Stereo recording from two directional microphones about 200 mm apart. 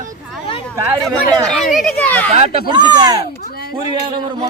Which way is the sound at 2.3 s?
30° right (ahead or behind).